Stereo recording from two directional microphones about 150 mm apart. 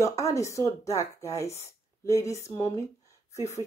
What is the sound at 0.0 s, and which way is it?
Speech, 20° left (ahead or behind).